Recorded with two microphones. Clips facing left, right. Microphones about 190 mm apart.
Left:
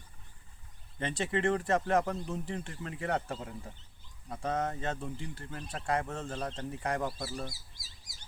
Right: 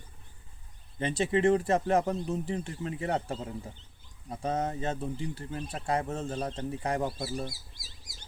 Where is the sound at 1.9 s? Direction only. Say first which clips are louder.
Right 2 dB; 25° right (ahead or behind).